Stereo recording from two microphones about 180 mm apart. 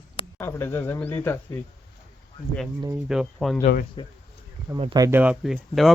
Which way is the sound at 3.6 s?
55° left (ahead or behind).